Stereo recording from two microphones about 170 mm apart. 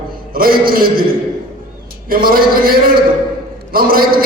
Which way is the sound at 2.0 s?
55° right (ahead or behind).